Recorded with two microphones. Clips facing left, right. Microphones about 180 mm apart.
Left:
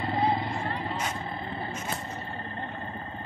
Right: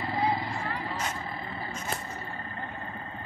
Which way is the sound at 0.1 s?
25° left (ahead or behind).